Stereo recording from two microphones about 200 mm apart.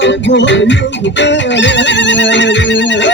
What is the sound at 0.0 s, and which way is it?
Music, 65° left (ahead or behind).